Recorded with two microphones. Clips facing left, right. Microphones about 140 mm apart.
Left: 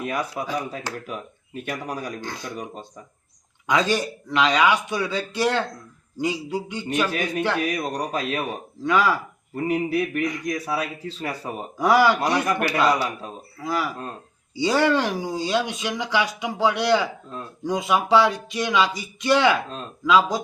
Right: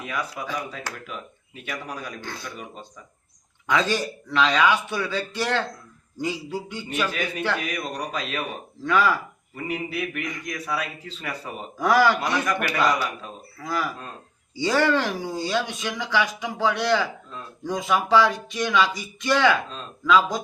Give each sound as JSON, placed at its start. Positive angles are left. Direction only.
{"t": 0.0, "sound": "speech", "side_deg": 45}
{"t": 3.7, "sound": "speech", "side_deg": 15}
{"t": 7.1, "sound": "speech", "side_deg": 50}
{"t": 7.8, "sound": "a sound", "side_deg": 40}
{"t": 8.8, "sound": "speech", "side_deg": 15}
{"t": 9.6, "sound": "a sound", "side_deg": 40}
{"t": 11.8, "sound": "speech", "side_deg": 15}
{"t": 12.2, "sound": "a sound", "side_deg": 40}
{"t": 13.6, "sound": "speech", "side_deg": 15}